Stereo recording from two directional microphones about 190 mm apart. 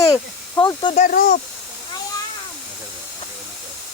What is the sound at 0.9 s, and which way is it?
Speech, 45° left (ahead or behind).